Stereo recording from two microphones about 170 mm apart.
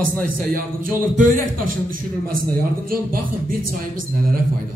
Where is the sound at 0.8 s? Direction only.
55° right (ahead or behind).